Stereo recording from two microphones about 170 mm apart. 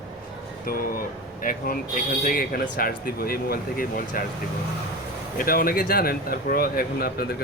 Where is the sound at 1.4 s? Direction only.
55° left (ahead or behind).